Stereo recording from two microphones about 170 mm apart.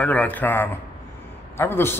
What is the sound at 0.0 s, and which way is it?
A man's voice, 10° left (ahead or behind).